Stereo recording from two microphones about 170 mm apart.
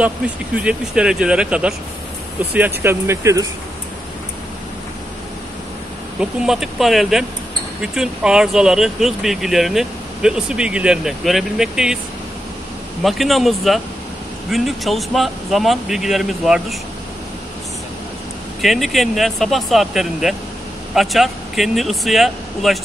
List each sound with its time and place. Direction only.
0.6 s speech: 5° right (ahead or behind)
6.4 s speech: centre (ahead or behind)
13.0 s speech: centre (ahead or behind)
18.6 s speech: centre (ahead or behind)